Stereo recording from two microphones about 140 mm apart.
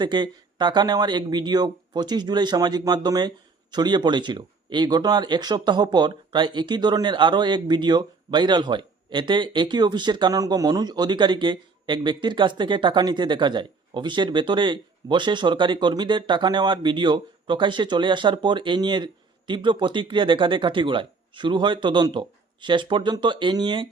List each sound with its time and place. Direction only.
0.0 s speech: 35° right (ahead or behind)